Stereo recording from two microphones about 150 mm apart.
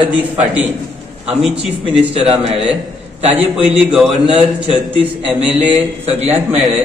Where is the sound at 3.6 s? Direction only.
5° right (ahead or behind).